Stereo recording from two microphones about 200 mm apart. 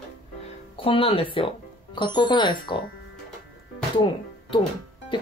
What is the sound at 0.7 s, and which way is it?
Speech, 30° left (ahead or behind).